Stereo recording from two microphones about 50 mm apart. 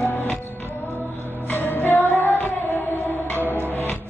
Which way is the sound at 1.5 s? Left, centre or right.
Left.